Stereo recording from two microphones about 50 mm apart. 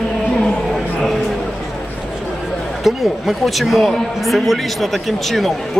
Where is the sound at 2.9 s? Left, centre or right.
Centre.